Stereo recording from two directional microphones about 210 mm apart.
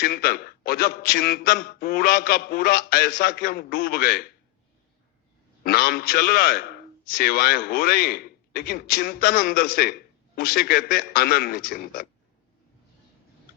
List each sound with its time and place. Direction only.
0.0 s a man's voice: 45° left (ahead or behind)
5.6 s a man's voice: 45° left (ahead or behind)